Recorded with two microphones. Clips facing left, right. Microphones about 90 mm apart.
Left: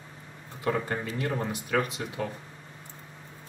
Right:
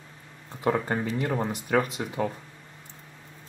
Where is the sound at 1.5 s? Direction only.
30° right (ahead or behind).